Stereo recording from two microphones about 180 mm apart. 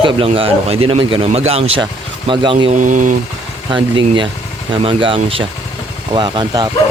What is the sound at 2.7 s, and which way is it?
Speech, 45° right (ahead or behind).